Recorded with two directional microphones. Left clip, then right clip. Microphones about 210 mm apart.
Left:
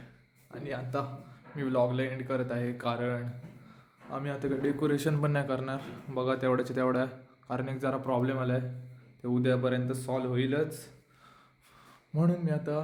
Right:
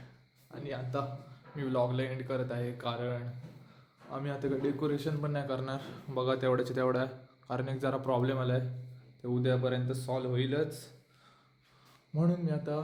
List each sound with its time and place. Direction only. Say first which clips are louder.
0.5 s speech: left 2 dB; 10° left (ahead or behind)
4.1 s a man's voice: left 1 dB; 5° left (ahead or behind)
4.9 s a man's voice: left 5 dB; 50° left (ahead or behind)
5.5 s a man's voice: left 3 dB; 10° left (ahead or behind)
9.2 s speech: left 3 dB; 15° left (ahead or behind)
12.1 s speech: left 2 dB; 15° left (ahead or behind)